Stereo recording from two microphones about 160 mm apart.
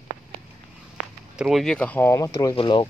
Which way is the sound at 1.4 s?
Centre (ahead or behind).